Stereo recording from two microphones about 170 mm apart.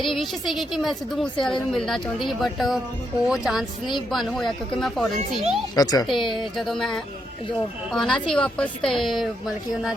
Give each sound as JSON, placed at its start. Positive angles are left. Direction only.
{"t": 0.1, "sound": "a woman's voice", "side_deg": 0}
{"t": 5.7, "sound": "speech", "side_deg": 20}
{"t": 6.6, "sound": "a woman's voice", "side_deg": 0}